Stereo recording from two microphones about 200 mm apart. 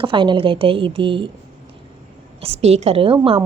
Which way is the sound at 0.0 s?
25° right (ahead or behind).